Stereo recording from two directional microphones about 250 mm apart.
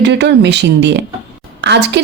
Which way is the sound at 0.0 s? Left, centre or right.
Right.